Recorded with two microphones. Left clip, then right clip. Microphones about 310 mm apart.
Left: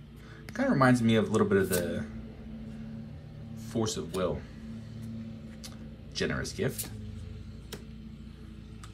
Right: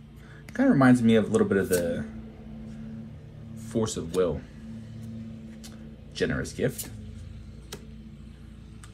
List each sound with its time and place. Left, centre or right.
0.6 s speech: left
3.6 s speech: centre
6.1 s speech: left